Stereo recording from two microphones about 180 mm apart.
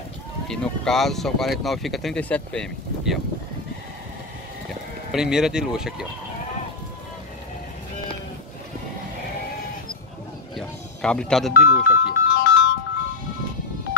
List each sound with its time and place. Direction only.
0.5 s speech: centre (ahead or behind)
5.1 s speech: 5° right (ahead or behind)
10.5 s telephone dialing: 5° left (ahead or behind)
11.6 s music: 65° left (ahead or behind)